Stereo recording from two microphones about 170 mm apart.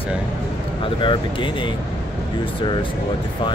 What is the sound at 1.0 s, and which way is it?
Speech, 30° left (ahead or behind).